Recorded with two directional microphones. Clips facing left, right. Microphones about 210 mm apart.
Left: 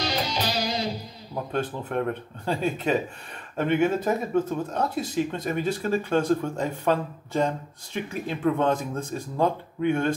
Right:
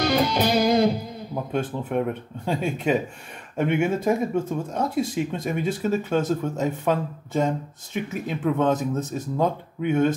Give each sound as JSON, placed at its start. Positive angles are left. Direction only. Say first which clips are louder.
{"t": 0.0, "sound": "music", "louder": "right 7 dB", "side_deg": -55}
{"t": 1.3, "sound": "speech", "louder": "right 1 dB", "side_deg": -5}